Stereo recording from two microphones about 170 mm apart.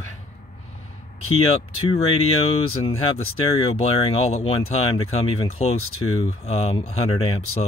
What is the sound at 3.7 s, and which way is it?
Speech, 40° left (ahead or behind).